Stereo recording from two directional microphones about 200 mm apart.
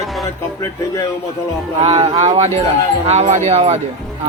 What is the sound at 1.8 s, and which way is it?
Speech, 30° right (ahead or behind).